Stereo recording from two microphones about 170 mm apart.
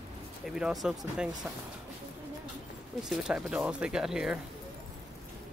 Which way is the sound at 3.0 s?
5° right (ahead or behind).